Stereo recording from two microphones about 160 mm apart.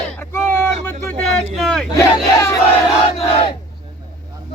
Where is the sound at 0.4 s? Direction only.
15° left (ahead or behind).